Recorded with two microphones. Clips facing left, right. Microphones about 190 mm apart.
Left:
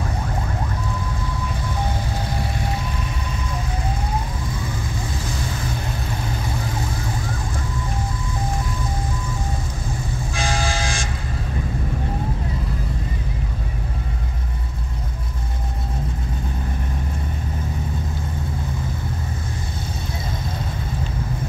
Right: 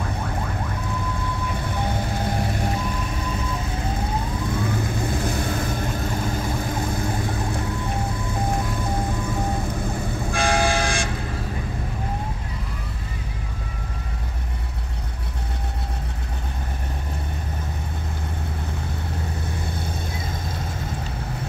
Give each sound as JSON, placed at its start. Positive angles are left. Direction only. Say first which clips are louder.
{"t": 5.2, "sound": "vehicle", "louder": "right 4 dB", "side_deg": -55}
{"t": 10.3, "sound": "train", "louder": "right 4 dB", "side_deg": -60}